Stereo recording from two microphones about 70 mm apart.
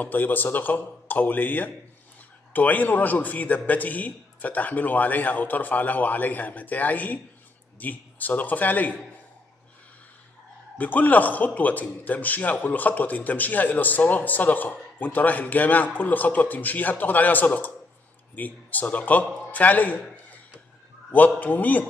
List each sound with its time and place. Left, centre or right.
0.0 s a man's voice: left
10.8 s a man's voice: left
21.4 s a man's voice: left